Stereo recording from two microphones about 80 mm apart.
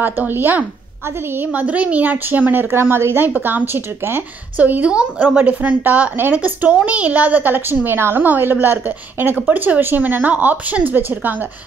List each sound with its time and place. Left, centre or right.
0.0 s a woman's voice: right